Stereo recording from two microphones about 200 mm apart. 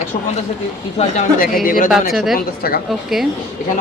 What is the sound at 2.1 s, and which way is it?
Speech, centre (ahead or behind).